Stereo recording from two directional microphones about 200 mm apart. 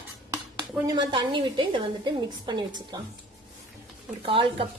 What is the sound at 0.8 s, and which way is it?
A woman's voice, 20° right (ahead or behind).